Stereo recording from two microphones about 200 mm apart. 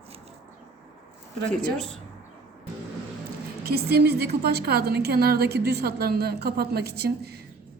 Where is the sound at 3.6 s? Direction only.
50° right (ahead or behind).